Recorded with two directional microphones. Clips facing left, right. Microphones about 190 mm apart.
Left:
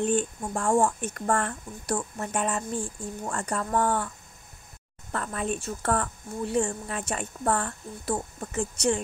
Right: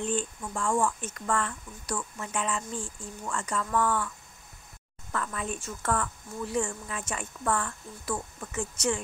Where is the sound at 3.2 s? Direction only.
40° left (ahead or behind).